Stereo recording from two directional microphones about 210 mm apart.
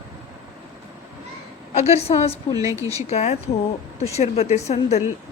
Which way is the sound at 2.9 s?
30° left (ahead or behind).